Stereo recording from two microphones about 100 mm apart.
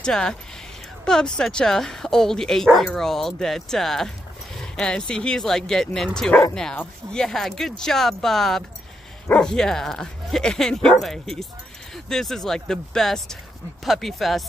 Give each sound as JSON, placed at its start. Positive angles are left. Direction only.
{"t": 0.0, "sound": "speech", "side_deg": 5}